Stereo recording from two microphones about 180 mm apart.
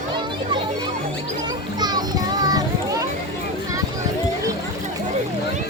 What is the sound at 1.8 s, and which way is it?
Children playing, 20° right (ahead or behind).